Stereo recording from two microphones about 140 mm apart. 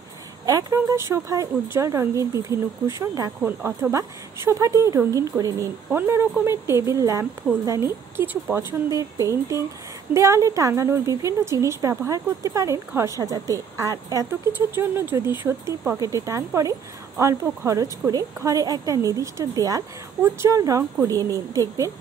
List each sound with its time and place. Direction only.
0.5 s a woman's voice: 25° right (ahead or behind)